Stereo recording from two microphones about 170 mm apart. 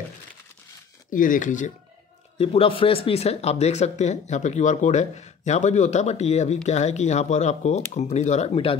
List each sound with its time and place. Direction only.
1.1 s speech: 50° left (ahead or behind)
2.3 s speech: 35° left (ahead or behind)